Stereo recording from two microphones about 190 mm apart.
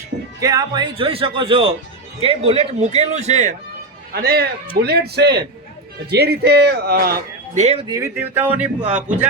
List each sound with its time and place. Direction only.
0.3 s a man's voice: 20° right (ahead or behind); by 3.5 s 35° right (ahead or behind)
4.1 s speech: 55° right (ahead or behind)
7.6 s a man's voice: 30° right (ahead or behind)
8.0 s music: 10° right (ahead or behind)